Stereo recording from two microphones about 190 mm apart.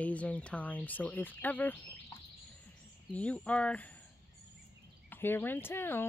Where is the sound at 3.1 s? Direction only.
5° left (ahead or behind).